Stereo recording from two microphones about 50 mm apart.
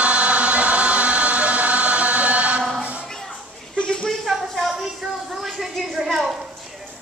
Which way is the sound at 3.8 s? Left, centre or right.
Centre.